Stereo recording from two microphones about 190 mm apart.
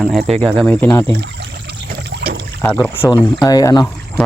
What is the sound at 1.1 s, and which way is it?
Rowboat, 60° right (ahead or behind).